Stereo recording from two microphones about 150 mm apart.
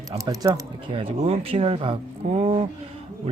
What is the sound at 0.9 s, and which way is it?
Speech, 40° right (ahead or behind).